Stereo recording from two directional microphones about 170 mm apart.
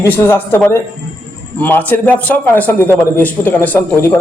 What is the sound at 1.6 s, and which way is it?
A man's voice, 10° left (ahead or behind).